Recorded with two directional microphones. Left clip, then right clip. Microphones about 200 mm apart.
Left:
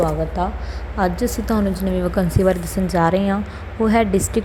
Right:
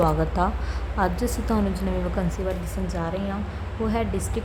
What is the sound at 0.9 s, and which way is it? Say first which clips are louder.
A woman's voice: left 5 dB; 15° left (ahead or behind).